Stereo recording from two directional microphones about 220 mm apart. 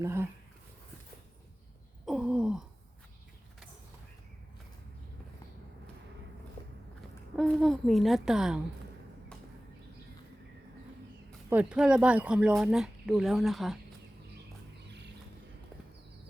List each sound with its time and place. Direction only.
0.0 s speech: 10° right (ahead or behind)
2.0 s gasp: 5° right (ahead or behind)
6.6 s a sound: 25° left (ahead or behind)
7.3 s speech: centre (ahead or behind)
11.4 s speech: 5° right (ahead or behind)
14.8 s vehicle: 50° right (ahead or behind)